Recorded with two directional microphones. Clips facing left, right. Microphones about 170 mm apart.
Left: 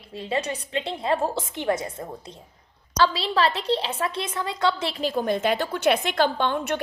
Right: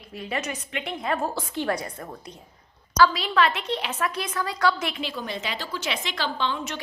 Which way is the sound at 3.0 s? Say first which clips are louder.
Right 1 dB; 30° left (ahead or behind).